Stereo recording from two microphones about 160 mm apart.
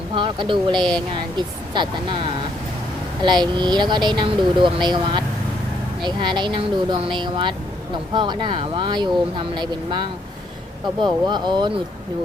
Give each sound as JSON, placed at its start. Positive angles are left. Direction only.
{"t": 0.1, "sound": "speech", "side_deg": -30}
{"t": 0.8, "sound": "speech", "side_deg": 5}
{"t": 1.1, "sound": "speech", "side_deg": -30}